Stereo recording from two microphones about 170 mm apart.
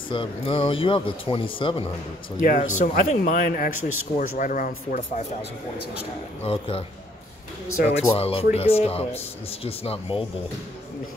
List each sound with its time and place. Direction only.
0.1 s speech: 30° left (ahead or behind)
2.4 s speech: 50° left (ahead or behind)
6.4 s speech: 35° left (ahead or behind)
7.8 s speech: 35° left (ahead or behind)